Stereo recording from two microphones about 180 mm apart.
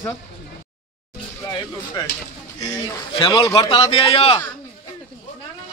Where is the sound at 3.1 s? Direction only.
30° left (ahead or behind).